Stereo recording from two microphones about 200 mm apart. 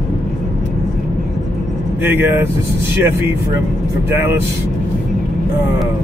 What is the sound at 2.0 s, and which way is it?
A man's voice, 10° right (ahead or behind).